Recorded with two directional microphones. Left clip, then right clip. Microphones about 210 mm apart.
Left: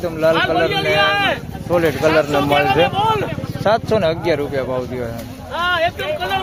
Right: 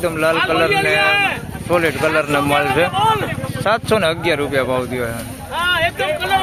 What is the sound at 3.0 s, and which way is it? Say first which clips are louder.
Speech: right 1 dB; 40° left (ahead or behind).